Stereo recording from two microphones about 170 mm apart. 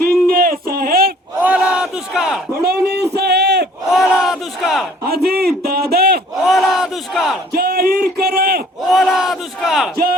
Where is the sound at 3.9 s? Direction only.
Centre (ahead or behind).